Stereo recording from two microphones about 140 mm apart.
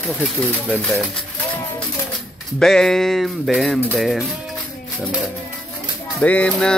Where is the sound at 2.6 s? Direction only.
5° left (ahead or behind).